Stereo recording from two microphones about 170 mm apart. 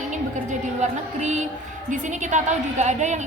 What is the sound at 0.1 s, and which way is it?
Music, 45° right (ahead or behind).